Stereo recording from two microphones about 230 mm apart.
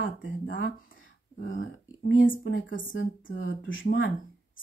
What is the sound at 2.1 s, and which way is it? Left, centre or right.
A woman's voice, left.